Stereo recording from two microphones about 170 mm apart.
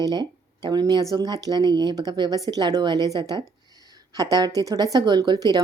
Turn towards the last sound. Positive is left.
turn(degrees=-25)  # may be behind; listen again after turning